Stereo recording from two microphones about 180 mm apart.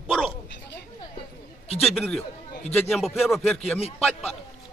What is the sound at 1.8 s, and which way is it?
Speech, centre (ahead or behind).